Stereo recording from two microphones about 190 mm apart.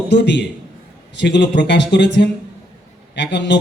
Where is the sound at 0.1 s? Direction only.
65° left (ahead or behind).